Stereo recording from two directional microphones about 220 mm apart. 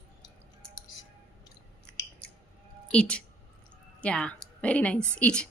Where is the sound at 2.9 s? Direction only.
5° left (ahead or behind).